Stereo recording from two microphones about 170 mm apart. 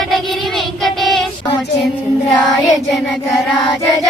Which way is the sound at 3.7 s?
20° left (ahead or behind).